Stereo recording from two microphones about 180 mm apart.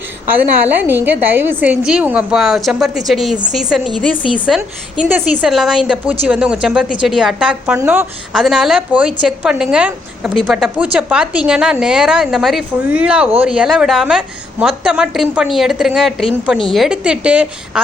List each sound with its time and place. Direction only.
0.9 s a woman's voice: 10° right (ahead or behind)
8.3 s a woman's voice: centre (ahead or behind)